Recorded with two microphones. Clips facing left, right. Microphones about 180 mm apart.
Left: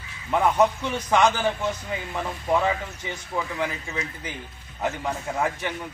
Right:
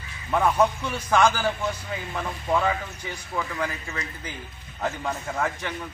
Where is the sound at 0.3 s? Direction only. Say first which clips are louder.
Left 1 dB; 15° left (ahead or behind).